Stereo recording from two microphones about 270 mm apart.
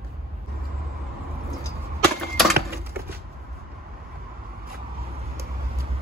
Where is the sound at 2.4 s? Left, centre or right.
Centre.